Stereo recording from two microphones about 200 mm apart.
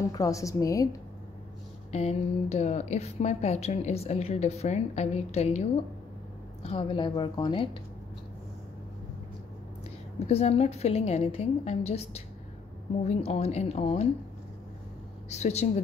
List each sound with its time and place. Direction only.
0.1 s a woman's voice: 15° left (ahead or behind)
1.9 s a woman's voice: 30° left (ahead or behind)
10.1 s a woman's voice: 30° left (ahead or behind)
15.2 s a woman's voice: 35° left (ahead or behind)